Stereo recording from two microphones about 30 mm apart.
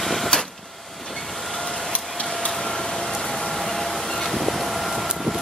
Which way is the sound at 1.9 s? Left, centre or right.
Left.